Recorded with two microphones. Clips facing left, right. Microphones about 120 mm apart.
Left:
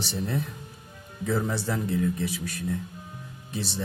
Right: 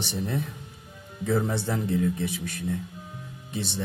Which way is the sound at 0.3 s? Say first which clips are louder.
Even; 20° right (ahead or behind).